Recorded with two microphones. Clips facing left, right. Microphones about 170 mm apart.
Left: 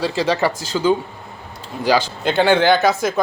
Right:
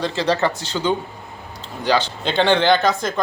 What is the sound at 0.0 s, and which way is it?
Speech, 10° left (ahead or behind).